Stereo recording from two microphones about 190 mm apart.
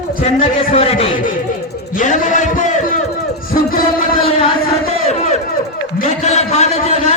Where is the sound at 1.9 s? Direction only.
45° left (ahead or behind).